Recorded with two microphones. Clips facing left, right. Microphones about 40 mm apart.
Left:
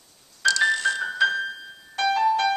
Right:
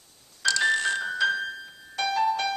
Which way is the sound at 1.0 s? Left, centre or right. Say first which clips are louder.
Left 3 dB; centre.